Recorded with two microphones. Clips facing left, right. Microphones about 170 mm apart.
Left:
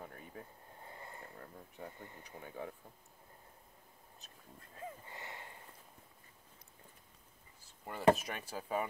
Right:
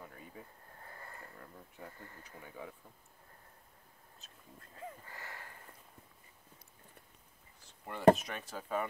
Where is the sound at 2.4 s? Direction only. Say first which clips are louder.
Left 3 dB; 40° left (ahead or behind).